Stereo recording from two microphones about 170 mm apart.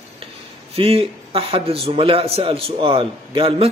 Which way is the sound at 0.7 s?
35° right (ahead or behind).